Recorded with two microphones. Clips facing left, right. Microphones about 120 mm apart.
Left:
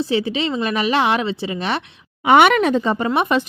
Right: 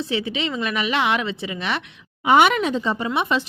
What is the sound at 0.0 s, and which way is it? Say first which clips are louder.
A woman's voice: left 5 dB; 35° left (ahead or behind).